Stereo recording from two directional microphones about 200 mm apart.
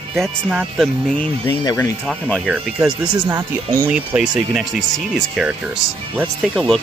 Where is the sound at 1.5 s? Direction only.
15° left (ahead or behind).